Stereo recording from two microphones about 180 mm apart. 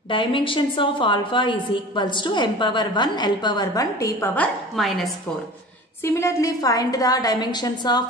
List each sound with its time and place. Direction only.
0.1 s a woman's voice: 30° left (ahead or behind)
4.7 s speech: centre (ahead or behind)
6.0 s a woman's voice: 15° left (ahead or behind)